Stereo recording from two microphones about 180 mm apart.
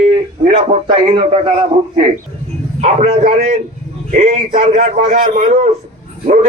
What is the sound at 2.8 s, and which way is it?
Speech, 35° right (ahead or behind).